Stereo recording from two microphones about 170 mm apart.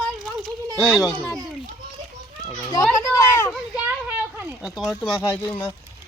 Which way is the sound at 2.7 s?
20° left (ahead or behind).